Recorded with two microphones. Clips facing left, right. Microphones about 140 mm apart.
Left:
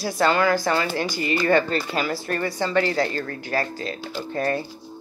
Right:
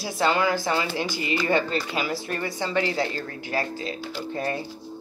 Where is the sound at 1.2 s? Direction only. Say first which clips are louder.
Left 4 dB; 15° right (ahead or behind).